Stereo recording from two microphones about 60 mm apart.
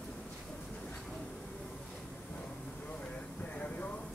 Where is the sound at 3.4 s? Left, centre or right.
Left.